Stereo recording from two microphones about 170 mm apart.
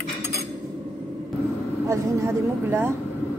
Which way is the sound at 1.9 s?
15° right (ahead or behind).